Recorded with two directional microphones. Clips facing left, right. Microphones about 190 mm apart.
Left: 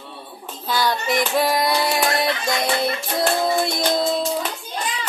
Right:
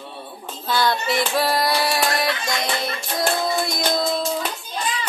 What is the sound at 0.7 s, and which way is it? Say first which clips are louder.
Child singing: even; 15° left (ahead or behind).